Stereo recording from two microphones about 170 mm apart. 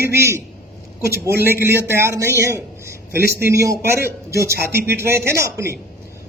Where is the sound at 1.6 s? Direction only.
15° right (ahead or behind).